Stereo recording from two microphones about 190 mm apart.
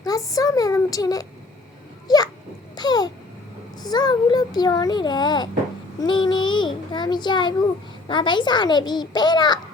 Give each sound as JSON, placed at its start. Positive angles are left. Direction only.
{"t": 0.0, "sound": "a sound", "side_deg": 20}
{"t": 2.0, "sound": "babbling", "side_deg": 20}
{"t": 3.8, "sound": "speech", "side_deg": 20}